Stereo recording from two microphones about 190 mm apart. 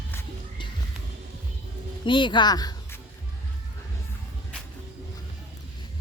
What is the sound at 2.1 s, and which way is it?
Speech, 25° left (ahead or behind).